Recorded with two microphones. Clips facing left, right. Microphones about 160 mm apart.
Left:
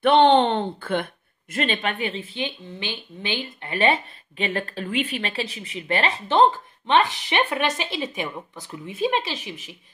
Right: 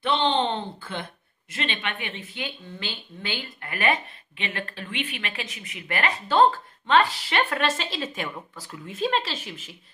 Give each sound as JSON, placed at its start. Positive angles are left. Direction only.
{"t": 0.0, "sound": "a woman's voice", "side_deg": 55}